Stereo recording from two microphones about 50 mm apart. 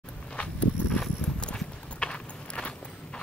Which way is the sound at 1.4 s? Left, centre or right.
Centre.